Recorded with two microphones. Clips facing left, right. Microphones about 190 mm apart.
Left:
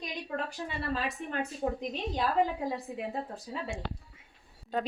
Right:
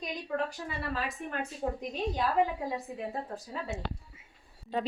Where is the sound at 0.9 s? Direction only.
35° left (ahead or behind).